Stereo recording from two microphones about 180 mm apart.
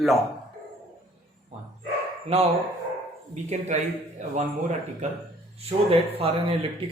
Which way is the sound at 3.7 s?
40° right (ahead or behind).